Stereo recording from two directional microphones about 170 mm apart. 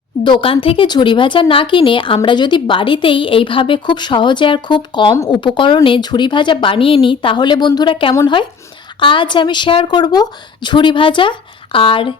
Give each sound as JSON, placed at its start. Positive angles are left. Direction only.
{"t": 0.3, "sound": "speech", "side_deg": 30}